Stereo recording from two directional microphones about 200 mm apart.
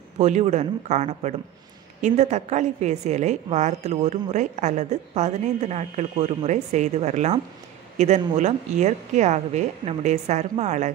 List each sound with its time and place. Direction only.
0.2 s a woman's voice: 35° right (ahead or behind)